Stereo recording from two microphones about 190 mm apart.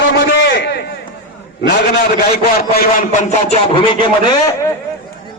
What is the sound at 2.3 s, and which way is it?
A man's voice, 50° left (ahead or behind).